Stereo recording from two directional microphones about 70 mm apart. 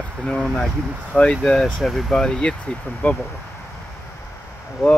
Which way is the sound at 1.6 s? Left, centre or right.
Centre.